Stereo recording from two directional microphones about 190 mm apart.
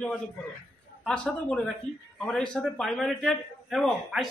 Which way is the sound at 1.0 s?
5° left (ahead or behind).